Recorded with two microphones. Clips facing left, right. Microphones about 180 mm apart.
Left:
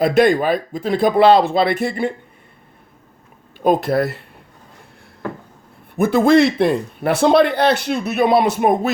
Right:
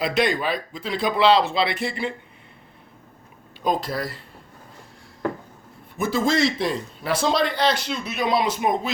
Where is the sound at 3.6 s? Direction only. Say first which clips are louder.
Left 9 dB; 60° left (ahead or behind).